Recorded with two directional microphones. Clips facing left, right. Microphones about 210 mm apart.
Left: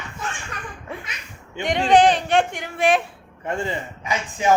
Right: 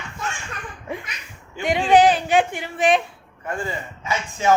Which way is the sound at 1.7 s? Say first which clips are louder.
Even; 5° right (ahead or behind).